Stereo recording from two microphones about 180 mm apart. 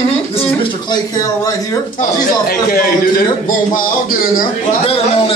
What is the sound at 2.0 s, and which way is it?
A man's voice, 55° left (ahead or behind).